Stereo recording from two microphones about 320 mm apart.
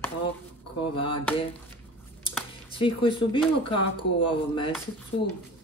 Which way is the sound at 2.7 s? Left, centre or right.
Centre.